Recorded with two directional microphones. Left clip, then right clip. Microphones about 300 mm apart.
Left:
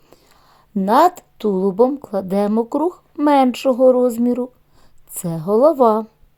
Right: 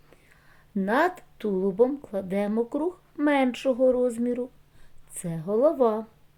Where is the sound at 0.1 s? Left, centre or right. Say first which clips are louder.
Left 7 dB; left.